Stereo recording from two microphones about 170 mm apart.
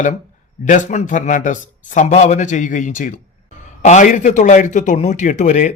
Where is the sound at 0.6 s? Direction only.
45° left (ahead or behind).